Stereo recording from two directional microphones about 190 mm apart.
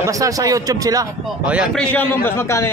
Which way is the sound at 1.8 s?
10° left (ahead or behind).